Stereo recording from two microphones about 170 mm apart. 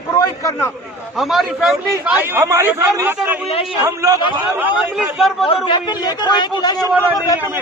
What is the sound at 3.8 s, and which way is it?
A man's voice, 15° right (ahead or behind).